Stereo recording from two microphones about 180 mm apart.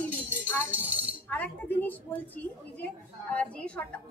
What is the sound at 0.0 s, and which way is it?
Music, 10° left (ahead or behind).